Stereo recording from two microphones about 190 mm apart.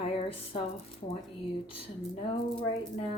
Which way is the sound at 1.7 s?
30° left (ahead or behind).